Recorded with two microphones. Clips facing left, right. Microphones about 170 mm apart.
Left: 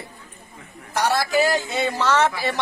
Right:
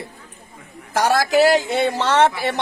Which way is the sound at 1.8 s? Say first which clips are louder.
Right 1 dB; 25° right (ahead or behind).